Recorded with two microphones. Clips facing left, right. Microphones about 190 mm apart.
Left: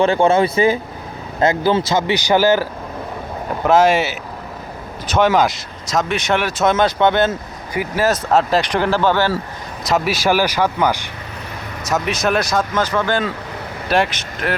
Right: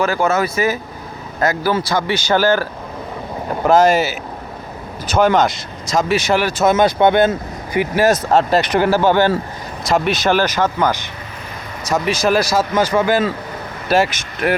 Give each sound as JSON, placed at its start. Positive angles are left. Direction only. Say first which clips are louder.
{"t": 0.0, "sound": "speech", "louder": "left 3 dB", "side_deg": 30}
{"t": 3.6, "sound": "speech", "louder": "right 1 dB", "side_deg": 5}
{"t": 6.7, "sound": "speech", "louder": "right 3 dB", "side_deg": -10}
{"t": 8.3, "sound": "speech", "louder": "right 1 dB", "side_deg": 0}
{"t": 9.9, "sound": "speech", "louder": "right 1 dB", "side_deg": 5}
{"t": 11.9, "sound": "speech", "louder": "right 2 dB", "side_deg": 0}